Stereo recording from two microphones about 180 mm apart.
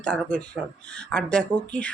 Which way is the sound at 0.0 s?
5° left (ahead or behind).